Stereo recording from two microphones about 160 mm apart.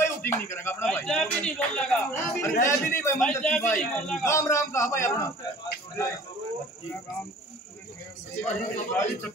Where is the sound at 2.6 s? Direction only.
15° left (ahead or behind).